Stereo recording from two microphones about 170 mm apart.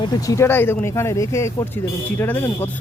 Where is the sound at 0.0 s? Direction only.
20° left (ahead or behind).